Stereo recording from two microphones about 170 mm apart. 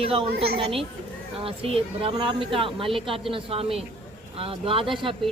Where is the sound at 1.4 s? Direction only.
35° right (ahead or behind).